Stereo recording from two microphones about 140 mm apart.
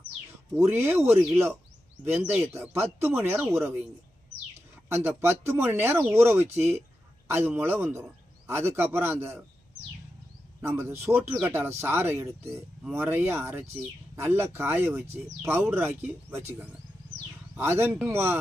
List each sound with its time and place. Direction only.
0.7 s speech: 15° right (ahead or behind)
2.4 s speech: 20° right (ahead or behind)
4.9 s speech: 20° right (ahead or behind)
10.6 s speech: 20° right (ahead or behind)